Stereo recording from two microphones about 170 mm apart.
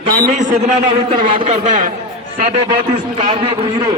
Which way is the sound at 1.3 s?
35° right (ahead or behind).